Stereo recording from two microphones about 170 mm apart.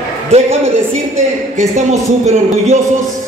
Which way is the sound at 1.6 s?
40° right (ahead or behind).